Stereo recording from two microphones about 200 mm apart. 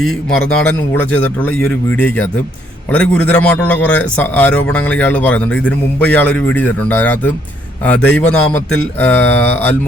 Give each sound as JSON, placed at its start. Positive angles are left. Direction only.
{"t": 0.0, "sound": "a man's voice", "side_deg": 5}